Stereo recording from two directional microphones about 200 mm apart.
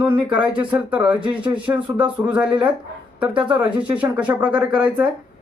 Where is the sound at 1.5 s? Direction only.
5° right (ahead or behind).